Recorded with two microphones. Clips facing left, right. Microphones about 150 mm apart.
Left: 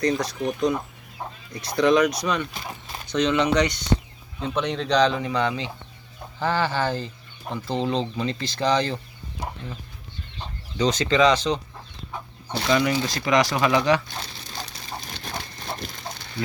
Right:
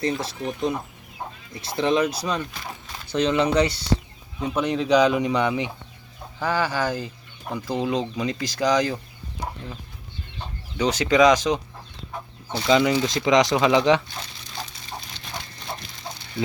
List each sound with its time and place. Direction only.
0.0 s speech: 25° right (ahead or behind)
4.4 s speech: 5° right (ahead or behind)
10.8 s speech: 10° right (ahead or behind)
12.6 s speech: 20° right (ahead or behind)